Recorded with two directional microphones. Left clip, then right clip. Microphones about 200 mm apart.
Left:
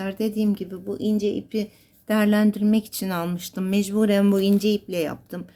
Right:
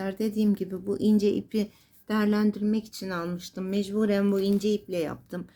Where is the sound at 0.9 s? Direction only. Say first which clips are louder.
Even; 15° right (ahead or behind).